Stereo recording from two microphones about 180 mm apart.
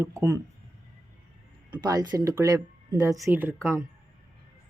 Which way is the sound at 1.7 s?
20° right (ahead or behind).